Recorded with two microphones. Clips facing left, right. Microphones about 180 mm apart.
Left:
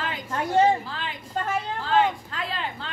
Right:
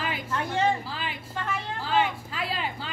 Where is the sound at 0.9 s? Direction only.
5° right (ahead or behind).